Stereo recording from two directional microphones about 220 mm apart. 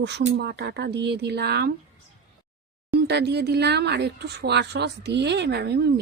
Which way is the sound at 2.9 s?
50° right (ahead or behind).